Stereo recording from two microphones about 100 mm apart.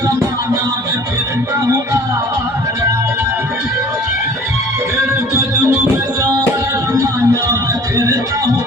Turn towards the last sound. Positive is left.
turn(degrees=-30)  # may be behind; listen again after turning